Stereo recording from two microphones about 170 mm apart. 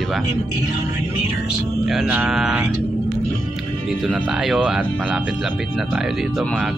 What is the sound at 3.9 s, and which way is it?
A man's voice, 5° right (ahead or behind).